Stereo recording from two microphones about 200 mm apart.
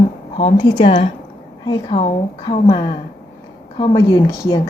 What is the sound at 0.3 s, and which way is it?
Speech, 30° left (ahead or behind).